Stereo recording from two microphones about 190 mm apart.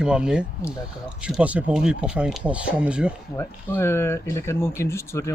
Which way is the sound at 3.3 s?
10° left (ahead or behind).